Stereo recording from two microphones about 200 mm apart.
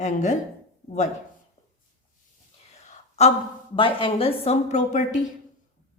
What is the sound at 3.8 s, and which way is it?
A woman's voice, 25° left (ahead or behind).